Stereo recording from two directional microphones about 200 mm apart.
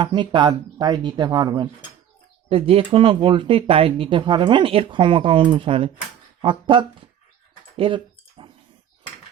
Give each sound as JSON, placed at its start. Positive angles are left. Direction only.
{"t": 0.0, "sound": "speech", "side_deg": -25}
{"t": 7.8, "sound": "typing", "side_deg": -25}